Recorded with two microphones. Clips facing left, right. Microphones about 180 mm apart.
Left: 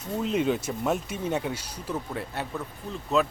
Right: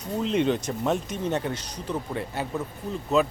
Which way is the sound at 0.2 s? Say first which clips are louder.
Right 2 dB; 5° left (ahead or behind).